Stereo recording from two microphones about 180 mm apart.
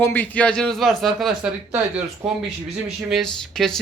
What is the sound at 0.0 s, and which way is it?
A man's voice, 10° left (ahead or behind).